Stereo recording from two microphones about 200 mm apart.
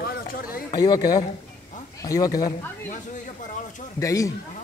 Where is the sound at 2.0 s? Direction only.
15° left (ahead or behind).